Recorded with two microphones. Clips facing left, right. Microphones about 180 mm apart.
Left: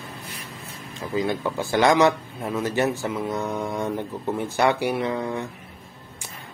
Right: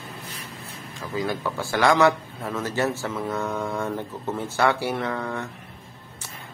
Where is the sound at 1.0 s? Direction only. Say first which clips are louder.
Left 3 dB; 20° left (ahead or behind).